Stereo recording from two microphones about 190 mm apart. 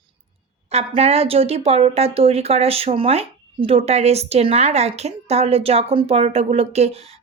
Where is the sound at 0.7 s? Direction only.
30° right (ahead or behind).